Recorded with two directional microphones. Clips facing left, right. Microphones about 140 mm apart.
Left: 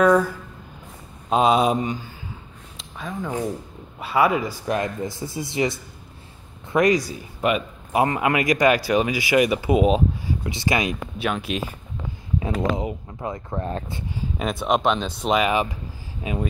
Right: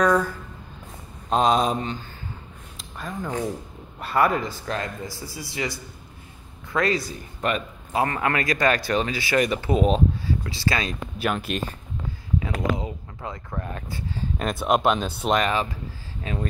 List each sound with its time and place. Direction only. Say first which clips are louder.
0.0 s speech: left 3 dB; 10° left (ahead or behind)
1.3 s speech: left 2 dB; 5° left (ahead or behind)
2.8 s speech: left 2 dB; centre (ahead or behind)
10.4 s speech: left 6 dB; 20° left (ahead or behind)
11.1 s speech: right 1 dB; centre (ahead or behind)
12.4 s speech: left 3 dB; 25° left (ahead or behind)
14.4 s speech: even; centre (ahead or behind)